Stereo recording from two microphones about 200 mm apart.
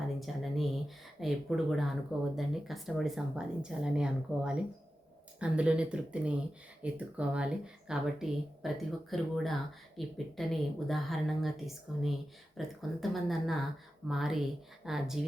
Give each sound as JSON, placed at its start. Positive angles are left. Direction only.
{"t": 0.2, "sound": "speech", "side_deg": 0}